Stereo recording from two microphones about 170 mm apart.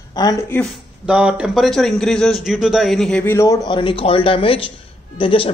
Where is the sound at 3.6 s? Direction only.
30° left (ahead or behind).